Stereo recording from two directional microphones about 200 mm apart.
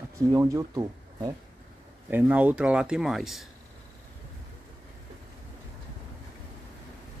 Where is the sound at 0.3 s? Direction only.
15° right (ahead or behind).